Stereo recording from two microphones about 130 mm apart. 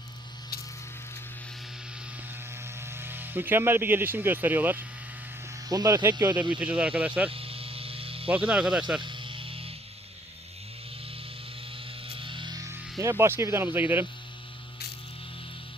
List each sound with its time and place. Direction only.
2.8 s speech: 15° right (ahead or behind)
5.6 s speech: 30° right (ahead or behind)
6.6 s speech: 10° right (ahead or behind)
7.3 s hum: 45° right (ahead or behind)
8.3 s speech: 10° right (ahead or behind)
9.0 s music: 40° right (ahead or behind)
12.0 s music: 40° right (ahead or behind)
12.7 s speech: 20° right (ahead or behind)